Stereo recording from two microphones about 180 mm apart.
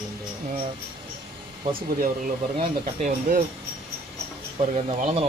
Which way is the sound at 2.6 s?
40° right (ahead or behind).